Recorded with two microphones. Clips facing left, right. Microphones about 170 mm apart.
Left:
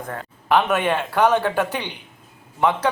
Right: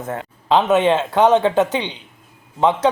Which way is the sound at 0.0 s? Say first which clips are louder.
Right 5 dB; 20° right (ahead or behind).